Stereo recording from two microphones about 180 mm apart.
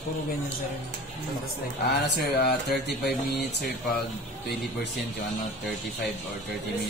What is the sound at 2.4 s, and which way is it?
Speech, 65° left (ahead or behind).